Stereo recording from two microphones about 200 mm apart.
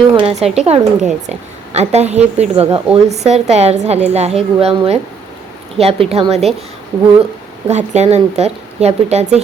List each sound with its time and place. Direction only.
0.1 s a woman's voice: 25° right (ahead or behind)
7.7 s a woman's voice: 35° right (ahead or behind)